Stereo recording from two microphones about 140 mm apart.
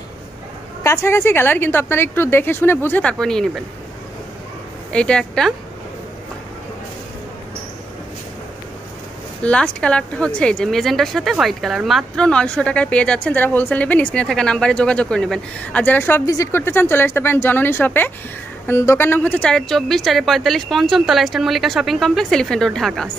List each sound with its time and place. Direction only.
0.8 s speech: 20° left (ahead or behind)
4.9 s a woman's voice: 5° left (ahead or behind)
9.4 s a woman's voice: 10° left (ahead or behind)